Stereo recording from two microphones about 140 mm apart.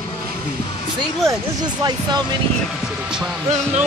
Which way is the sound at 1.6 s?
30° right (ahead or behind).